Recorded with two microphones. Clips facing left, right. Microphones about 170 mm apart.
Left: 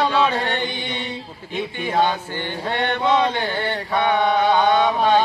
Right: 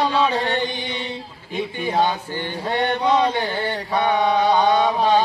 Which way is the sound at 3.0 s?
Centre (ahead or behind).